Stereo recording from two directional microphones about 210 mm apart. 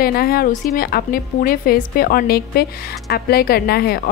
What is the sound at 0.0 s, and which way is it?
A woman's voice, 45° left (ahead or behind).